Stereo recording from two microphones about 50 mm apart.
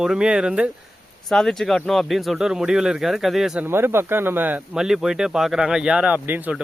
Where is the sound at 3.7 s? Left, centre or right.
Right.